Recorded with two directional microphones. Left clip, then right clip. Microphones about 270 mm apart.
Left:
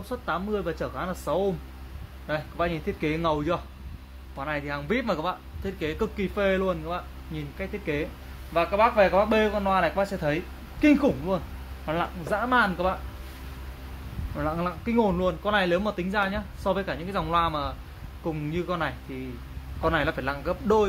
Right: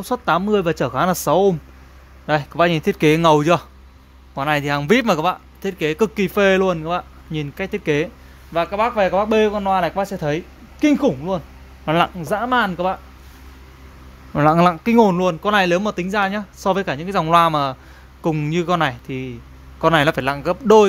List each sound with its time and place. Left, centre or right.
0.1 s speech: right
14.3 s speech: right